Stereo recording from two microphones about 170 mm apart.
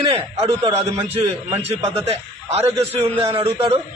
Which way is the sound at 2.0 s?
35° right (ahead or behind).